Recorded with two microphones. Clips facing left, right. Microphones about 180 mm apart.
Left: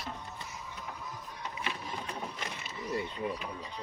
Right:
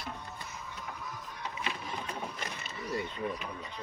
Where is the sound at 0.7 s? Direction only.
10° left (ahead or behind).